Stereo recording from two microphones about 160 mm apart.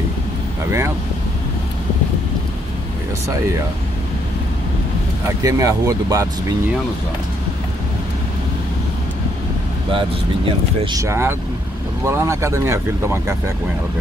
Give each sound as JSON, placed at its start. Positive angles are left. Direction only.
{"t": 0.7, "sound": "speech", "side_deg": -15}
{"t": 5.4, "sound": "speech", "side_deg": -20}
{"t": 9.9, "sound": "speech", "side_deg": -30}
{"t": 11.0, "sound": "speech", "side_deg": -15}